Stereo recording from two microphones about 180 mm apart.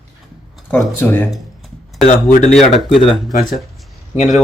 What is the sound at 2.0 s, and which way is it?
Speech, 40° left (ahead or behind).